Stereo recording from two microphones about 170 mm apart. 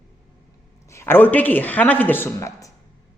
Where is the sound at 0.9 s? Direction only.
15° left (ahead or behind).